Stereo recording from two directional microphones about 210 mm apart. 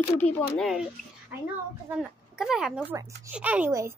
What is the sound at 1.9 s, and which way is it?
A woman's voice, 5° right (ahead or behind).